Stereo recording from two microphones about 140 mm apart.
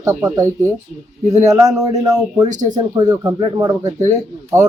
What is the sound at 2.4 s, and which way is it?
Speech, 60° right (ahead or behind).